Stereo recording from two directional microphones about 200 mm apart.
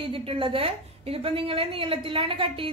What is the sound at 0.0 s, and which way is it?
A woman's voice, 30° right (ahead or behind).